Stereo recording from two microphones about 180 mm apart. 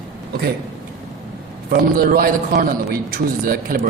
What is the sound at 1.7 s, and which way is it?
A man's voice, 55° right (ahead or behind).